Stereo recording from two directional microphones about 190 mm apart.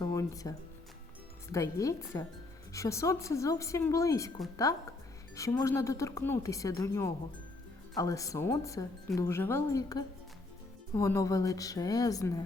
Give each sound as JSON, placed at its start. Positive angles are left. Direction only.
{"t": 0.0, "sound": "music", "side_deg": 20}
{"t": 1.5, "sound": "speech", "side_deg": 15}